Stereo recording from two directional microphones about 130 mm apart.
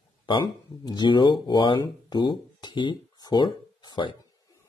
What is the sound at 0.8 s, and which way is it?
Speech, 35° left (ahead or behind).